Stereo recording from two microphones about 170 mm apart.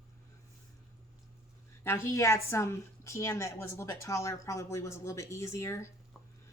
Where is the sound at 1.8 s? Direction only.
15° left (ahead or behind).